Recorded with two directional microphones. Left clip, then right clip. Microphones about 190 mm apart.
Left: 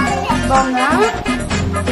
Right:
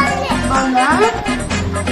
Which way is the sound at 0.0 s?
Centre (ahead or behind).